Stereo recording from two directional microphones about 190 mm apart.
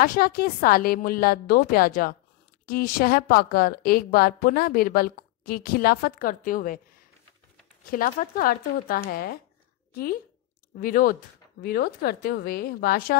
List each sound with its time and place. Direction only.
0.0 s a woman's voice: 50° left (ahead or behind)
7.9 s a woman's voice: 50° left (ahead or behind)
10.8 s a woman's voice: 45° left (ahead or behind)